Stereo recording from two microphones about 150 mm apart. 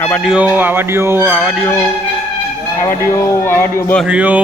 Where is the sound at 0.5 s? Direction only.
15° right (ahead or behind).